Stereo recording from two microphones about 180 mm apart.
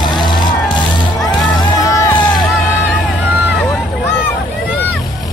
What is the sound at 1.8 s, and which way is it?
Music, 20° left (ahead or behind).